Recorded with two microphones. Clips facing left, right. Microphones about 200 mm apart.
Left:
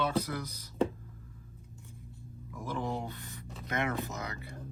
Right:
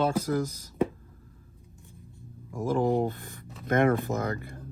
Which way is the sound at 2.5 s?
45° right (ahead or behind).